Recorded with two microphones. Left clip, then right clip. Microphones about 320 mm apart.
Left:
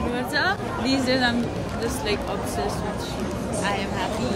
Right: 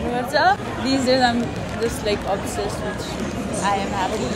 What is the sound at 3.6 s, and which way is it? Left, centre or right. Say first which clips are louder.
Speech: right 5 dB; centre.